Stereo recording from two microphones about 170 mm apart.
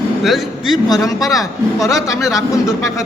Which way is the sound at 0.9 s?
20° left (ahead or behind).